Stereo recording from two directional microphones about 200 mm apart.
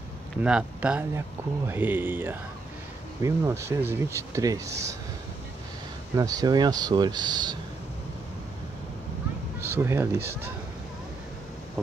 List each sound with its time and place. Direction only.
0.4 s speech: 5° right (ahead or behind)
6.1 s speech: 20° right (ahead or behind)
9.6 s speech: 10° right (ahead or behind)